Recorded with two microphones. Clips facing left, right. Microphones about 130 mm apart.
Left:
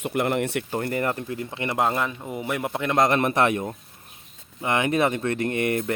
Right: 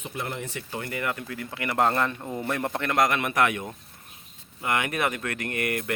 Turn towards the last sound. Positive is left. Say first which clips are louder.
# left 5 dB
turn(degrees=25)  # may be behind; listen again after turning